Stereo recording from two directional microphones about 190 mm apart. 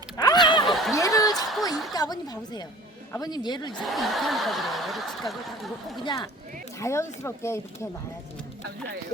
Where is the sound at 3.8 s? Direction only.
Centre (ahead or behind).